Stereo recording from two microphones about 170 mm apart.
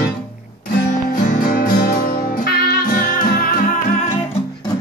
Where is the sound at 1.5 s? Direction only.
55° left (ahead or behind).